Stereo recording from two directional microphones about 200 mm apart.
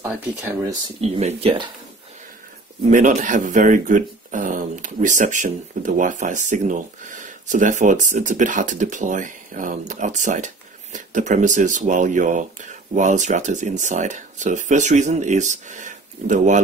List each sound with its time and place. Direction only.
0.0 s speech: 10° right (ahead or behind)
0.8 s speech: 30° right (ahead or behind)
2.9 s speech: 40° right (ahead or behind)